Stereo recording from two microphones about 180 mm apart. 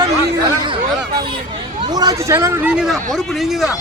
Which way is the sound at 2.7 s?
5° right (ahead or behind).